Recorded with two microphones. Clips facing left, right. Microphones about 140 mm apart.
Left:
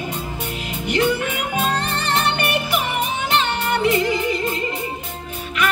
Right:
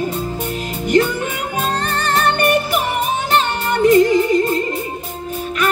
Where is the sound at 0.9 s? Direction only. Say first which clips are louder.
Right 4 dB; 45° right (ahead or behind).